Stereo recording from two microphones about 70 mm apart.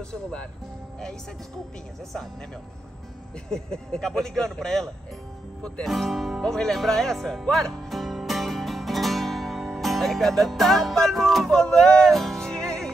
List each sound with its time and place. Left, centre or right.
0.1 s speech: centre
3.4 s speech: centre
5.9 s speech: centre
7.5 s music: centre